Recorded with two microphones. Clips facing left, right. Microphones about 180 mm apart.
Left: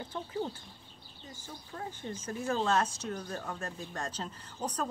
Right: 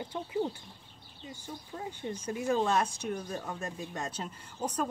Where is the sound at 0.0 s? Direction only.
15° right (ahead or behind).